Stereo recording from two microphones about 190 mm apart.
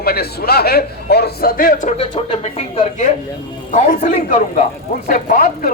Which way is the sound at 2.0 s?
30° left (ahead or behind).